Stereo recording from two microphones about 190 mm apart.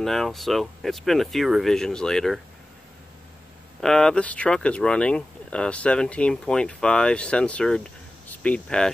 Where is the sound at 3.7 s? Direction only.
5° left (ahead or behind).